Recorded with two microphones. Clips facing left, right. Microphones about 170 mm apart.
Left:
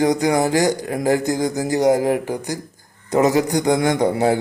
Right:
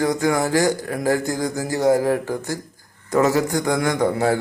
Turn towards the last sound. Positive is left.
turn(degrees=20)  # may be behind; listen again after turning